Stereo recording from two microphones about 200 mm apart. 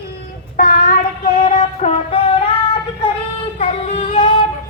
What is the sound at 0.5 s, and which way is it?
Child singing, 45° left (ahead or behind).